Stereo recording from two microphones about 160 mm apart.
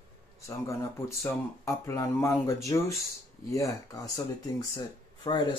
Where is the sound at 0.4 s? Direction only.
20° left (ahead or behind).